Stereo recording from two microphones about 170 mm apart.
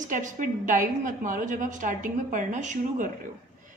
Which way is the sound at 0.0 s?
50° right (ahead or behind).